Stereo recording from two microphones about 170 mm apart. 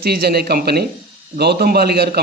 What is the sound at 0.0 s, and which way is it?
Speech, 65° right (ahead or behind).